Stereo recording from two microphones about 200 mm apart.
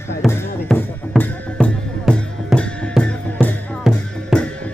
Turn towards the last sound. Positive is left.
turn(degrees=5)  # may be behind; listen again after turning